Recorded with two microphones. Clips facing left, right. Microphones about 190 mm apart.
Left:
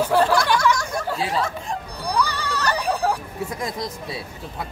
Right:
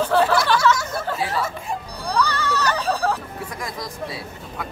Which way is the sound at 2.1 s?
10° left (ahead or behind).